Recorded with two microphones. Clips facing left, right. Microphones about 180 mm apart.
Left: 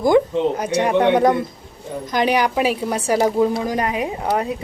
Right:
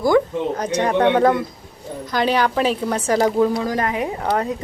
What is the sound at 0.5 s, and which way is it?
A woman's voice, 10° left (ahead or behind).